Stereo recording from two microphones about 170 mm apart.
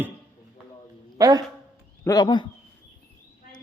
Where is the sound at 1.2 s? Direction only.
20° right (ahead or behind).